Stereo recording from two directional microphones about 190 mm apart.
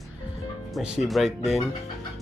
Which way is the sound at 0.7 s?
Centre (ahead or behind).